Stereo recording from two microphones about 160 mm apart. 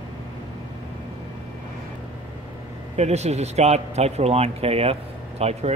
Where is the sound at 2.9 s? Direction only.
45° right (ahead or behind).